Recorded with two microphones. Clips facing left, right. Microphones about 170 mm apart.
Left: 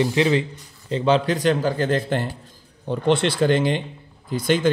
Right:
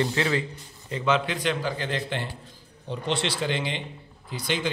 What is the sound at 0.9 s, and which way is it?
A man's voice, 35° left (ahead or behind).